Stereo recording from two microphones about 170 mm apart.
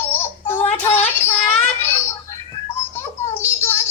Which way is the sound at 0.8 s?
10° left (ahead or behind).